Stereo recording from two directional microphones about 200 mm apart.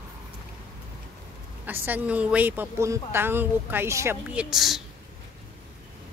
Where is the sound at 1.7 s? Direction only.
10° right (ahead or behind).